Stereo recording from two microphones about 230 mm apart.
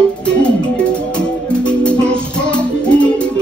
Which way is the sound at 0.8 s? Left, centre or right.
Centre.